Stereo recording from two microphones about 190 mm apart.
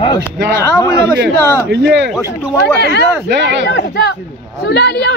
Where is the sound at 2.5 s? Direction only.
60° left (ahead or behind).